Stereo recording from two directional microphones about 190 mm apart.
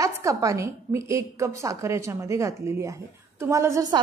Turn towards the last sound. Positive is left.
turn(degrees=-15)  # may be behind; listen again after turning